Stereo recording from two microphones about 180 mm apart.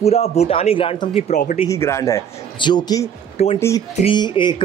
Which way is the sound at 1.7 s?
15° left (ahead or behind).